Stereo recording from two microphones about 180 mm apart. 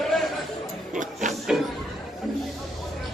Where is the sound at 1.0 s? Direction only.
45° right (ahead or behind).